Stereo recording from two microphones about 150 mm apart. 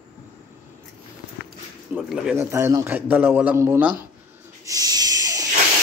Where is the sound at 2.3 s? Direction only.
15° right (ahead or behind).